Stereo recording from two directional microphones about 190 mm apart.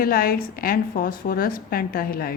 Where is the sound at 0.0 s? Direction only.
50° left (ahead or behind).